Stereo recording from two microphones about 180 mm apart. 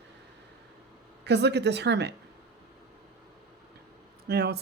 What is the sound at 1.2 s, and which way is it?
Speech, 70° right (ahead or behind).